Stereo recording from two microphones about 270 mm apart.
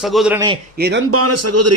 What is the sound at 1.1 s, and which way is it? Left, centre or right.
Speech, right.